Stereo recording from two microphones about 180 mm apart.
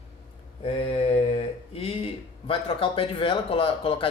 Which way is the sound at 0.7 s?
35° left (ahead or behind).